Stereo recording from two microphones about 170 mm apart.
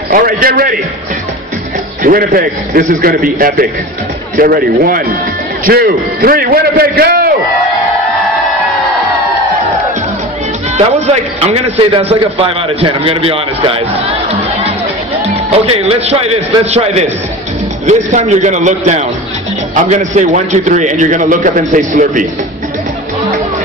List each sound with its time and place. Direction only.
0.1 s a man's voice: 60° right (ahead or behind)
2.0 s a man's voice: 60° right (ahead or behind)
11.4 s a man's voice: 35° right (ahead or behind)
15.6 s a man's voice: 40° right (ahead or behind)